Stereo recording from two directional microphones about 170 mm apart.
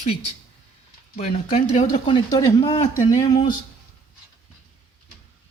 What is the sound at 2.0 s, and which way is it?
Speech, 25° left (ahead or behind).